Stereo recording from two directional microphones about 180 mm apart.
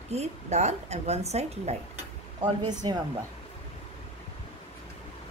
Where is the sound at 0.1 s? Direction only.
40° right (ahead or behind).